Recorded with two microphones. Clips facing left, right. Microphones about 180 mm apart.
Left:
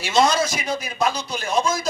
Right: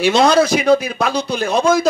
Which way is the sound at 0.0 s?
65° right (ahead or behind).